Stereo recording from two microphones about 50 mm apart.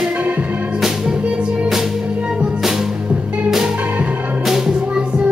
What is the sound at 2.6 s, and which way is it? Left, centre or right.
Music, centre.